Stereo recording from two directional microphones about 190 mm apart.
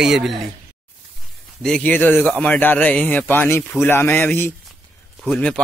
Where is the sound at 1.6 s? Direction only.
5° left (ahead or behind).